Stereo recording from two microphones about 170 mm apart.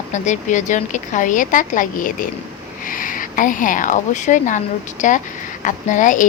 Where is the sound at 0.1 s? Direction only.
45° left (ahead or behind).